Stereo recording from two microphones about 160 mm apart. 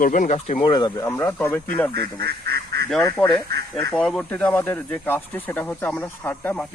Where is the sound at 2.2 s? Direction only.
85° right.